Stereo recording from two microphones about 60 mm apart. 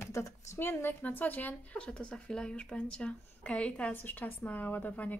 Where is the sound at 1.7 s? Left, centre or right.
Centre.